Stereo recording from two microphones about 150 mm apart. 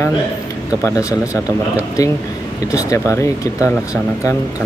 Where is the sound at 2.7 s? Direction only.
20° left (ahead or behind).